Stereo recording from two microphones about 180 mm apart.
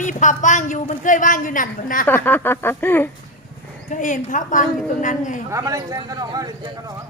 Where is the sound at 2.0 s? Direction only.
10° left (ahead or behind).